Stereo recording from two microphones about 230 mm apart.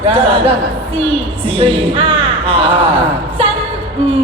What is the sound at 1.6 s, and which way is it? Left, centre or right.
Speech, right.